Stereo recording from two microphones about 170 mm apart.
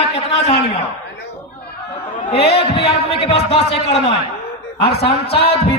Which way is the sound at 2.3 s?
35° left (ahead or behind).